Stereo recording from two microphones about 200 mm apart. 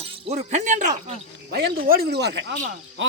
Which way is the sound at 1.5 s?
50° right (ahead or behind).